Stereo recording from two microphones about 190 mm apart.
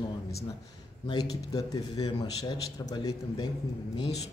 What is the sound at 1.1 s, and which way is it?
A man's voice, 20° left (ahead or behind).